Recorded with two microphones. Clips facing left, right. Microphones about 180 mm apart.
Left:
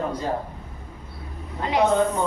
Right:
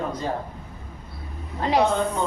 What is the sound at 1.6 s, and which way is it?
Speech, 35° right (ahead or behind).